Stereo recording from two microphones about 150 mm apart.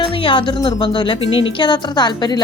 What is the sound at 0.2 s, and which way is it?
A woman's voice, 35° left (ahead or behind).